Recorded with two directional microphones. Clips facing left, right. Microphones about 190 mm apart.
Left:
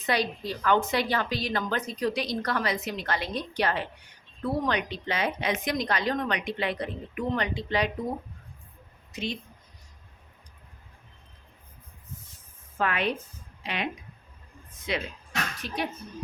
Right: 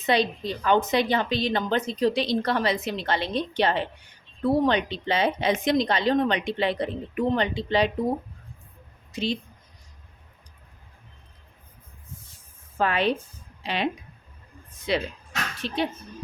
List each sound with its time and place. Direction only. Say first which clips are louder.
0.0 s a woman's voice: right 4 dB; 25° right (ahead or behind)
9.1 s speech: right 6 dB; 30° right (ahead or behind)
12.8 s a woman's voice: right 4 dB; 30° right (ahead or behind)